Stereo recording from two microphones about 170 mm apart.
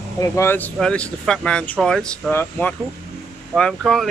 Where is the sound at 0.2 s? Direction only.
15° left (ahead or behind).